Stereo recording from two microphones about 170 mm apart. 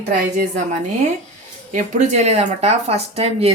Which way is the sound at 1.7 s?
45° right (ahead or behind).